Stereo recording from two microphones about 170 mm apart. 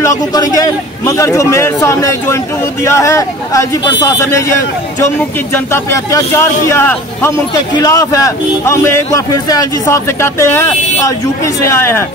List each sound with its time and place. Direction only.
0.0 s a man's voice: 20° left (ahead or behind)